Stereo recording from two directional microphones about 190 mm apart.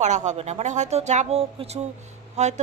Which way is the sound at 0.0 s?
40° right (ahead or behind).